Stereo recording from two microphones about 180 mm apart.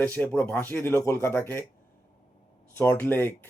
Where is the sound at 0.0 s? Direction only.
10° left (ahead or behind).